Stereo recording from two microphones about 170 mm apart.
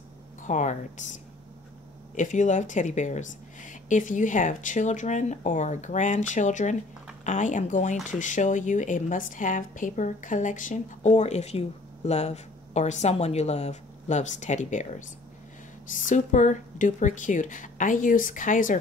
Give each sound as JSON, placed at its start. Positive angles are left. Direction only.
{"t": 0.4, "sound": "speech", "side_deg": 45}